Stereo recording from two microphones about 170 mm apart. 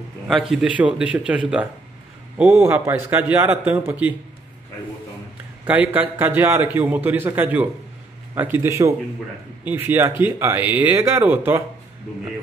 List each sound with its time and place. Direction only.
0.3 s a man's voice: 5° right (ahead or behind)
5.7 s a man's voice: 10° right (ahead or behind)